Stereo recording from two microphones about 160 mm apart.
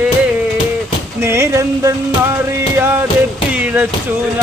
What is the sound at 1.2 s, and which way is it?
Speech, 15° right (ahead or behind).